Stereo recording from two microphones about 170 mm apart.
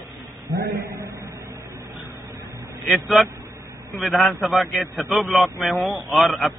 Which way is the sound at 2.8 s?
Centre (ahead or behind).